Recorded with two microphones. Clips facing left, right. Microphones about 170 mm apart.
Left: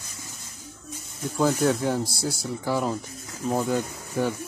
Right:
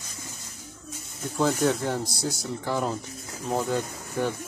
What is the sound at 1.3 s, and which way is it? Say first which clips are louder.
Speech: left 1 dB; 5° left (ahead or behind).